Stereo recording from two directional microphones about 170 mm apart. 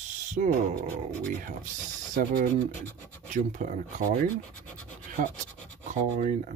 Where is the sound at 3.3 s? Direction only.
50° right (ahead or behind).